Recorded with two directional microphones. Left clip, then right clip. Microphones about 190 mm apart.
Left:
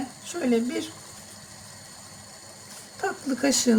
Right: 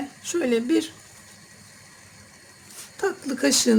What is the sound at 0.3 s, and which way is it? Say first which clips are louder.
Speech: right 4 dB; 60° right (ahead or behind).